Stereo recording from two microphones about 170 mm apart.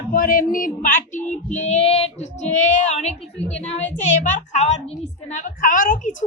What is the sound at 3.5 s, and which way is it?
Speech, 40° left (ahead or behind).